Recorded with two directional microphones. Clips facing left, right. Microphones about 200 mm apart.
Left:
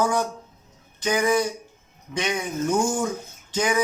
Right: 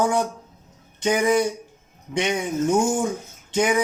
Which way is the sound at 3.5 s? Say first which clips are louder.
Right 3 dB; 25° right (ahead or behind).